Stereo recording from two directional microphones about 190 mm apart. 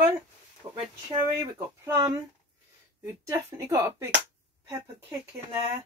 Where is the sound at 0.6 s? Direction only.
20° right (ahead or behind).